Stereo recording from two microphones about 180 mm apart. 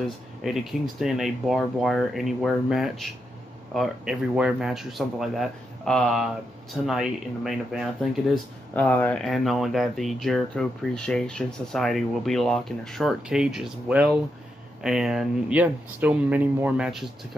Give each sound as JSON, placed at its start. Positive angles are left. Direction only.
{"t": 0.4, "sound": "speech", "side_deg": 0}
{"t": 8.7, "sound": "speech", "side_deg": 10}